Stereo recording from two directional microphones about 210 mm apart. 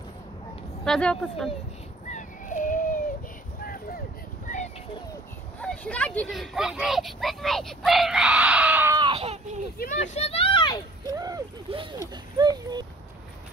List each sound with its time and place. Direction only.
0.8 s speech: centre (ahead or behind)
2.0 s a sound: 35° left (ahead or behind)
5.6 s speech: 5° left (ahead or behind)
8.9 s a sound: 25° right (ahead or behind)
9.8 s speech: 35° left (ahead or behind)
11.1 s speech: 15° right (ahead or behind)